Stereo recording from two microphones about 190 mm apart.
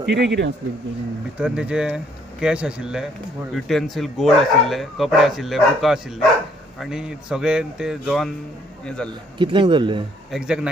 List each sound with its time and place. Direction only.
0.0 s a man's voice: 65° right (ahead or behind)
1.4 s speech: 5° right (ahead or behind)
9.4 s speech: 25° right (ahead or behind)
10.3 s speech: 5° right (ahead or behind)